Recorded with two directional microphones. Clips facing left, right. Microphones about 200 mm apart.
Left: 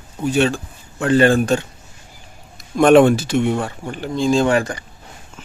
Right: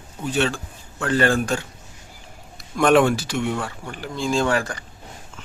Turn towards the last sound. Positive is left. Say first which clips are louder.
# left 5 dB
turn(degrees=20)  # may be behind; listen again after turning